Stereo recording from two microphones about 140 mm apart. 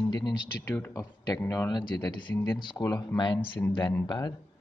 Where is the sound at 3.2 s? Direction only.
30° left (ahead or behind).